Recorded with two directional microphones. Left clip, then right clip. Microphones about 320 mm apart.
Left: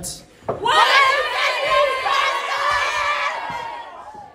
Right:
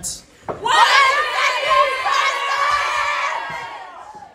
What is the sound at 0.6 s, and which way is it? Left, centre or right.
Speech, centre.